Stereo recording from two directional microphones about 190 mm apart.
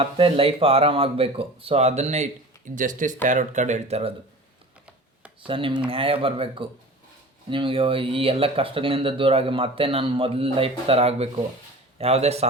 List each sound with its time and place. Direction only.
0.0 s speech: 30° right (ahead or behind)
5.5 s speech: 25° right (ahead or behind)